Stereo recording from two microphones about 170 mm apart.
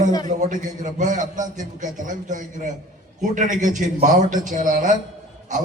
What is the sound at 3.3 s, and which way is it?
A man's voice, 50° right (ahead or behind).